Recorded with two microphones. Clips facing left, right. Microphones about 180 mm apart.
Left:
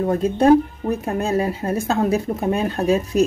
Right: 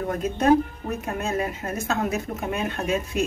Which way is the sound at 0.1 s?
30° left (ahead or behind).